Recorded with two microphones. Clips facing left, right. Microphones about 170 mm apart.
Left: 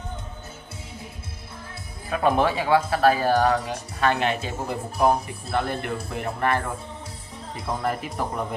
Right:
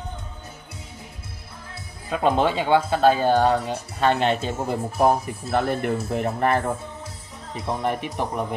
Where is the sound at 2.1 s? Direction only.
20° right (ahead or behind).